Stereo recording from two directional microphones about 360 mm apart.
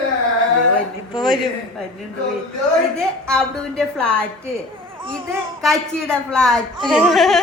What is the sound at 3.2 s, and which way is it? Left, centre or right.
A man's voice, centre.